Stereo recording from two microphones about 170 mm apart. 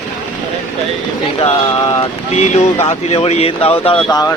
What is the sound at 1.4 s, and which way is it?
Speech, 30° left (ahead or behind).